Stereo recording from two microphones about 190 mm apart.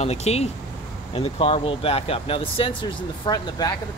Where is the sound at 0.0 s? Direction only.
35° left (ahead or behind).